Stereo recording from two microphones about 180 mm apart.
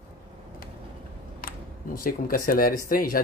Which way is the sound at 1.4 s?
50° left (ahead or behind).